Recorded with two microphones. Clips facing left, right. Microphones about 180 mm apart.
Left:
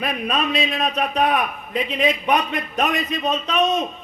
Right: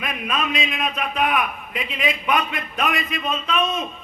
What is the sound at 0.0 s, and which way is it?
A man's voice, 35° left (ahead or behind).